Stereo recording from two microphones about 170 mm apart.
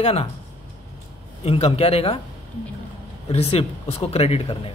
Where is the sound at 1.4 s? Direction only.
35° left (ahead or behind).